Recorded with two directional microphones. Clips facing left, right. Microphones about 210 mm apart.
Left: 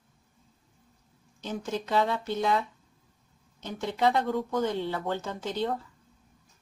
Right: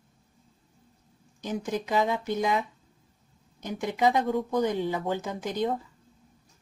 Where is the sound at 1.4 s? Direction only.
15° right (ahead or behind).